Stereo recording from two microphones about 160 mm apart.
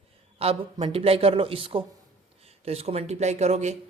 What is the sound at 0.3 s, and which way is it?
Speech, 40° right (ahead or behind).